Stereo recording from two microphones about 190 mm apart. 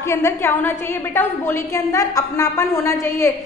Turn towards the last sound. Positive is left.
turn(degrees=15)  # may be behind; listen again after turning